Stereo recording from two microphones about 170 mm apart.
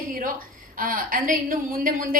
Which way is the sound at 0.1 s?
55° right (ahead or behind).